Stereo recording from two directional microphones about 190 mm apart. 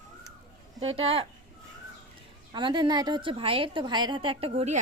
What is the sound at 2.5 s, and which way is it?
A woman's voice, 25° right (ahead or behind).